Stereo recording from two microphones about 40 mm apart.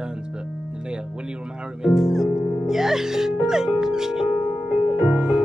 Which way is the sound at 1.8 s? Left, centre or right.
Centre.